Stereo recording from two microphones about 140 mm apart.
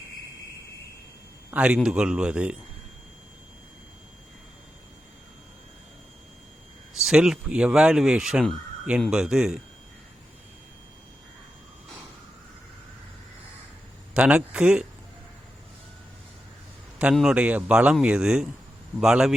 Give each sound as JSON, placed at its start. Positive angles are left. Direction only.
{"t": 1.5, "sound": "a man's voice", "side_deg": -10}
{"t": 7.0, "sound": "speech", "side_deg": -5}
{"t": 14.1, "sound": "a man's voice", "side_deg": -5}
{"t": 17.0, "sound": "a man's voice", "side_deg": -5}